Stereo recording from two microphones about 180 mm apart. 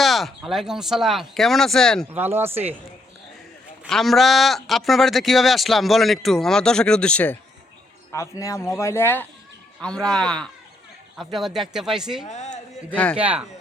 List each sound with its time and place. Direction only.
0.0 s speech: centre (ahead or behind)
2.1 s speech: 10° right (ahead or behind)
3.8 s speech: centre (ahead or behind)
12.3 s a man's voice: 40° left (ahead or behind)
12.9 s speech: 10° left (ahead or behind)
13.1 s speech: 5° right (ahead or behind)